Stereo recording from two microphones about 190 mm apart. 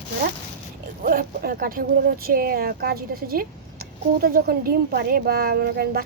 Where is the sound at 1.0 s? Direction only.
50° right (ahead or behind).